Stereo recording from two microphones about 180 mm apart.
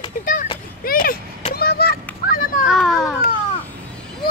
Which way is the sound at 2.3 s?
50° left (ahead or behind).